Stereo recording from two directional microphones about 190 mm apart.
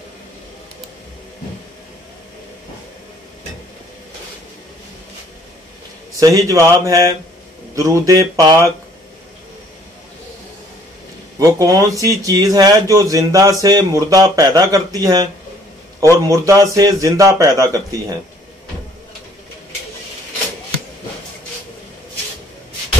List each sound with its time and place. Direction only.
6.1 s a man's voice: 15° right (ahead or behind)
11.3 s a man's voice: 20° right (ahead or behind)